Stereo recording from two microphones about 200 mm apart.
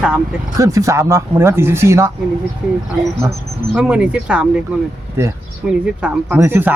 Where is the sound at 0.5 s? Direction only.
15° right (ahead or behind).